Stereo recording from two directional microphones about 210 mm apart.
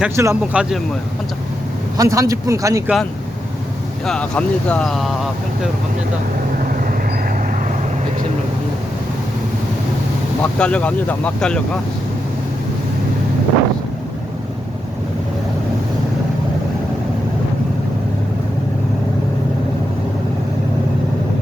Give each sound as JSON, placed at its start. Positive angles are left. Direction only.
{"t": 0.0, "sound": "speech", "side_deg": -10}
{"t": 2.0, "sound": "speech", "side_deg": -15}
{"t": 4.0, "sound": "speech", "side_deg": 5}
{"t": 10.4, "sound": "speech", "side_deg": 5}